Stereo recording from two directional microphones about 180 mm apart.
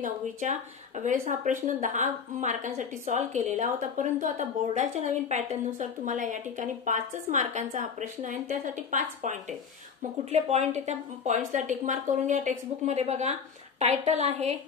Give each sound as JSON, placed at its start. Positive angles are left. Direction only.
{"t": 0.0, "sound": "a woman's voice", "side_deg": -45}